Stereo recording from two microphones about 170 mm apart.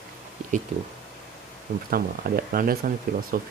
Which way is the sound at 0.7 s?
40° right (ahead or behind).